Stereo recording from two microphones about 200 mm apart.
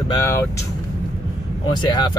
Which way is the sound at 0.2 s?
10° left (ahead or behind).